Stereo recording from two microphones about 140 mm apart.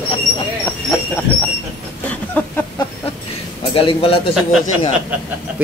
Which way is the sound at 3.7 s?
40° left (ahead or behind).